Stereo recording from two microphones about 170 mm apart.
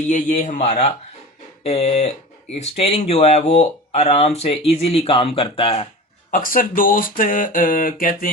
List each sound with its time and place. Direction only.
0.1 s speech: 45° left (ahead or behind)
6.3 s speech: 55° left (ahead or behind)